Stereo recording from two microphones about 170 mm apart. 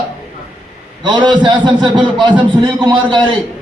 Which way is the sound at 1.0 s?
25° right (ahead or behind).